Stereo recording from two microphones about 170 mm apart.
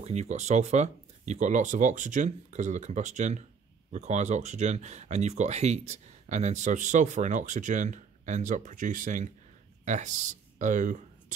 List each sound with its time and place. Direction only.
0.0 s speech: 40° right (ahead or behind)